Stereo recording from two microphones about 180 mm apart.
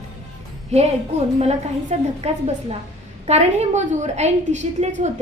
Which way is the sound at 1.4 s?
35° right (ahead or behind).